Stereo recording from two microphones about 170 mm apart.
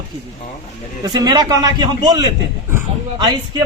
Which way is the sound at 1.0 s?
25° right (ahead or behind).